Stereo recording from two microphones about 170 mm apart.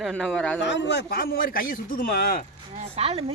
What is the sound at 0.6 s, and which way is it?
A man's voice, 85° left.